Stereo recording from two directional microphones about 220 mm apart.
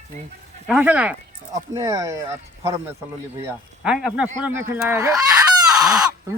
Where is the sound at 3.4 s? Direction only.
5° right (ahead or behind).